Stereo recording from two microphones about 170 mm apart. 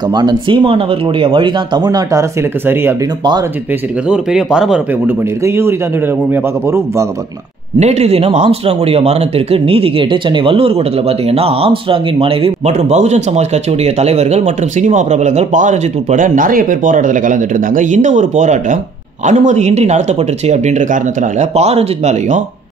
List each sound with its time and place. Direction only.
0.1 s speech: 25° right (ahead or behind)
4.1 s a man's voice: 5° right (ahead or behind)
7.8 s speech: 40° right (ahead or behind)